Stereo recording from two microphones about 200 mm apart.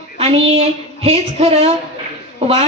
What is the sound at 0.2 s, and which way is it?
A woman's voice, 30° right (ahead or behind).